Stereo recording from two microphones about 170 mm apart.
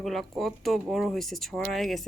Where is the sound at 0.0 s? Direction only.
Centre (ahead or behind).